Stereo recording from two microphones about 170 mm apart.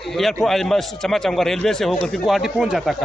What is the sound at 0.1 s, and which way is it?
A man's voice, centre (ahead or behind).